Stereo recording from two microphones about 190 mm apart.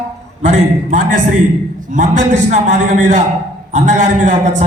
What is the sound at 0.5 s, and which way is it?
A man's voice, 40° right (ahead or behind).